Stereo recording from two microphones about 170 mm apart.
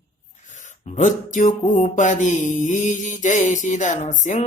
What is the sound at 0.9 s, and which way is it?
Music, 50° left (ahead or behind).